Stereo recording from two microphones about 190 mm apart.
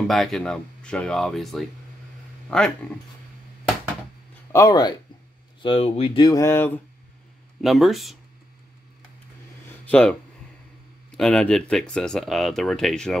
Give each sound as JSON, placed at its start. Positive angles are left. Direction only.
{"t": 0.1, "sound": "speech", "side_deg": 0}
{"t": 4.5, "sound": "speech", "side_deg": 15}
{"t": 7.6, "sound": "speech", "side_deg": 0}
{"t": 9.7, "sound": "a sound", "side_deg": 5}
{"t": 11.1, "sound": "speech", "side_deg": 5}